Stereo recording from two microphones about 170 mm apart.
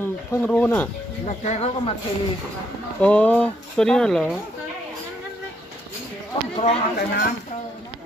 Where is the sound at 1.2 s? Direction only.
40° left (ahead or behind).